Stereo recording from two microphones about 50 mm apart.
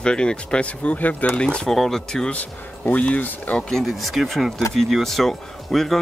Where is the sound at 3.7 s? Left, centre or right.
Centre.